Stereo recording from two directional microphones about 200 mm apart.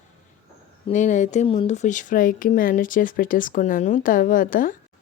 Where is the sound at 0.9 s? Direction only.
40° left (ahead or behind).